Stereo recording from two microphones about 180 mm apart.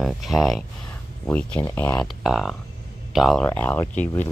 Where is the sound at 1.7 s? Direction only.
10° left (ahead or behind).